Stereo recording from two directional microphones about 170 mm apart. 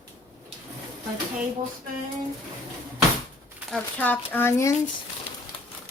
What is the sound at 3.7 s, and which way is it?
Speech, 10° left (ahead or behind).